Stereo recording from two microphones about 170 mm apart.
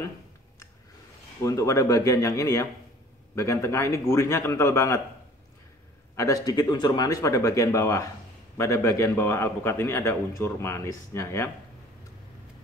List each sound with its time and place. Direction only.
1.4 s a man's voice: 20° left (ahead or behind)
6.1 s a man's voice: 20° left (ahead or behind)